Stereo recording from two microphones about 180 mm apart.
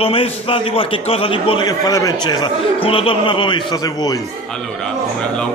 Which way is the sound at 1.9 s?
20° left (ahead or behind).